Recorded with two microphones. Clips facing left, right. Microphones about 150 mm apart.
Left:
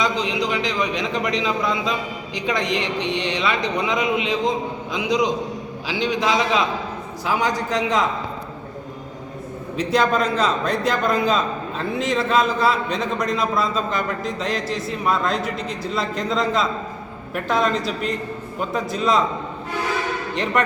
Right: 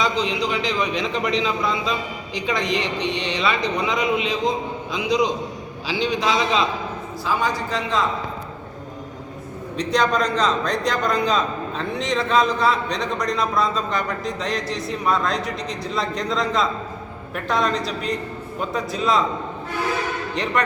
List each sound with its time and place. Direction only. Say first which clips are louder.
0.0 s a man's voice: even; 20° left (ahead or behind)
9.7 s speech: left 1 dB; 5° left (ahead or behind)
20.3 s speech: left 2 dB; centre (ahead or behind)